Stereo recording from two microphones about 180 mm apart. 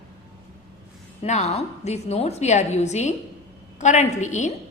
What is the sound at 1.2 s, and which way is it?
A woman's voice, 40° left (ahead or behind).